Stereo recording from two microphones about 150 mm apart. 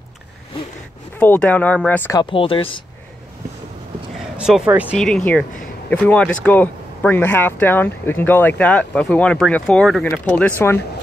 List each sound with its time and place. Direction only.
1.1 s speech: 10° left (ahead or behind)
2.1 s speech: 35° left (ahead or behind)
4.4 s speech: 5° right (ahead or behind)
4.9 s speech: 5° left (ahead or behind)